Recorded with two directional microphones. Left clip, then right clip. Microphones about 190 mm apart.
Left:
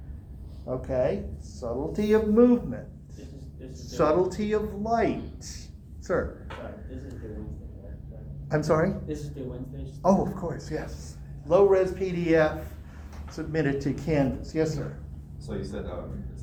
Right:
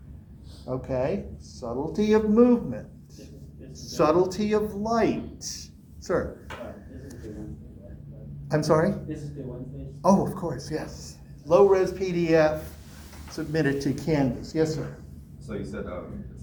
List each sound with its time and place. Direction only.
0.6 s a man's voice: 25° right (ahead or behind)
8.4 s a man's voice: 25° right (ahead or behind)
10.0 s a man's voice: 25° right (ahead or behind)